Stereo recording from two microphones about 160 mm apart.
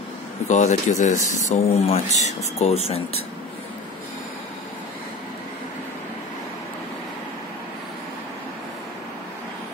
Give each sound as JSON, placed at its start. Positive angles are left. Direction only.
{"t": 0.5, "sound": "speech", "side_deg": 50}